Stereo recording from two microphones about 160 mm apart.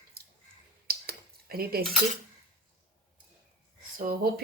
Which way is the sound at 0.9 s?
75° right (ahead or behind).